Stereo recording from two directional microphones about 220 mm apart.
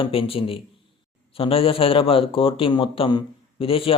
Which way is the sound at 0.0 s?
25° left (ahead or behind).